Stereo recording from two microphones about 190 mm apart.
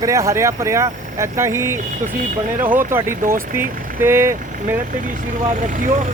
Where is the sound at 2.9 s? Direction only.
10° right (ahead or behind).